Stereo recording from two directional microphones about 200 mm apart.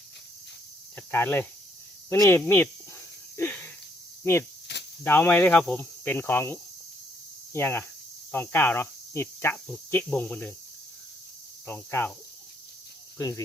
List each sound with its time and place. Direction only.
0.9 s speech: 10° left (ahead or behind)
3.3 s a sound: 10° left (ahead or behind)
4.2 s cricket: 10° left (ahead or behind)
4.7 s cricket: 60° left (ahead or behind)
5.0 s speech: 10° left (ahead or behind)
11.6 s speech: 10° left (ahead or behind)
13.1 s speech: 15° left (ahead or behind)